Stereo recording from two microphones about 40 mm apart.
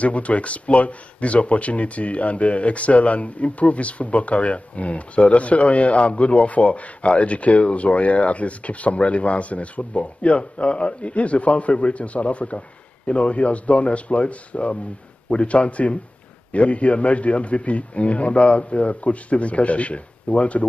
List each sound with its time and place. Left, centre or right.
0.0 s speech: left